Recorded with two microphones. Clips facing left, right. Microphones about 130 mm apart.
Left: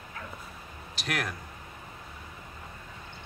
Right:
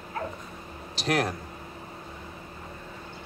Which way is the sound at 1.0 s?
30° right (ahead or behind).